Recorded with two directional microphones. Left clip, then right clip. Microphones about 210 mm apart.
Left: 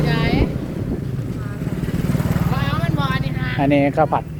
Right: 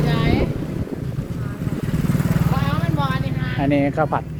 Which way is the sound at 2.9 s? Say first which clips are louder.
Left 1 dB; 35° left (ahead or behind).